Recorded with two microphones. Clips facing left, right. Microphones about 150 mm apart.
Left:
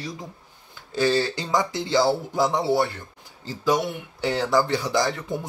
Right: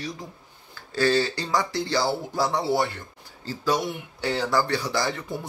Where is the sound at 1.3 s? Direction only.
20° left (ahead or behind).